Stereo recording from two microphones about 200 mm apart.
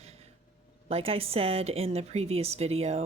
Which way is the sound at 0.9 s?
30° right (ahead or behind).